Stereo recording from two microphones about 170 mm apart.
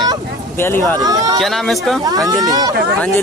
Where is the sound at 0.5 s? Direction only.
15° left (ahead or behind).